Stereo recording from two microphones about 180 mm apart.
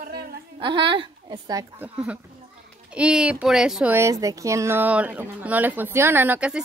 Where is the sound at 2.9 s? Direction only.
5° right (ahead or behind).